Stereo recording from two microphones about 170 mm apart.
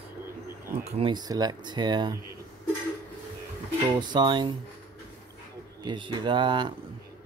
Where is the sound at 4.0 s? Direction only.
25° right (ahead or behind).